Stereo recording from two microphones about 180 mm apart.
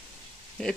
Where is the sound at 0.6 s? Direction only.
5° left (ahead or behind).